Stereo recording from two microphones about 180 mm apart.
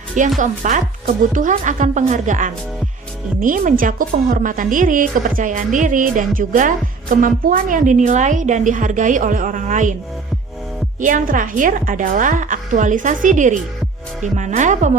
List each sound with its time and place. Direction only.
0.3 s speech: 45° right (ahead or behind)
11.0 s speech: 50° right (ahead or behind)